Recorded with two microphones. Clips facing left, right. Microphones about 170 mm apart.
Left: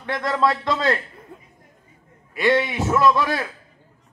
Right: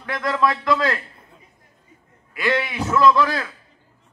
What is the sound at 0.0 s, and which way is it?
Speech, 25° left (ahead or behind).